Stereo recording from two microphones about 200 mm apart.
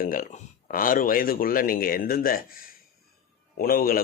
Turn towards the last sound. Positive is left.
turn(degrees=45)  # may be behind; listen again after turning